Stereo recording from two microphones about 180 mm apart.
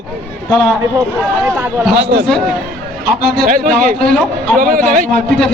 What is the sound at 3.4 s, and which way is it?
A man's voice, 55° right (ahead or behind).